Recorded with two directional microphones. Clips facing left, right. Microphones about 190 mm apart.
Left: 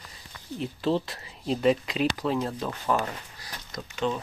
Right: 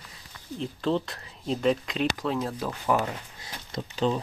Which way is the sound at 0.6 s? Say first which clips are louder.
Left 1 dB; 5° left (ahead or behind).